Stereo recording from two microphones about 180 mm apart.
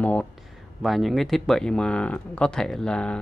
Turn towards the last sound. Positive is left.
turn(degrees=5)  # may be behind; listen again after turning